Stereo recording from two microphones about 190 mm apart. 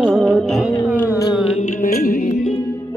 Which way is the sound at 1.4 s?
40° left (ahead or behind).